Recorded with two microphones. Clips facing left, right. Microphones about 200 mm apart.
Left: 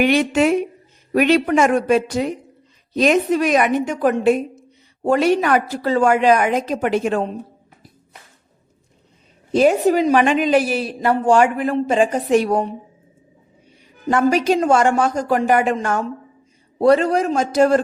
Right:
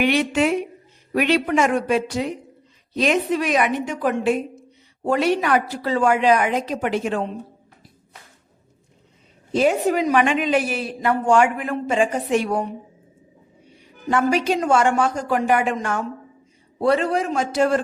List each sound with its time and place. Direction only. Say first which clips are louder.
0.0 s a woman's voice: left 3 dB; 45° left (ahead or behind)
9.5 s a woman's voice: left 4 dB; 40° left (ahead or behind)
14.1 s a woman's voice: left 3 dB; 40° left (ahead or behind)